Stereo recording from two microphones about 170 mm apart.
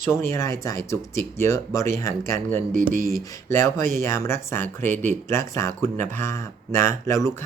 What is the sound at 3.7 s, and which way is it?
Speech, 50° right (ahead or behind).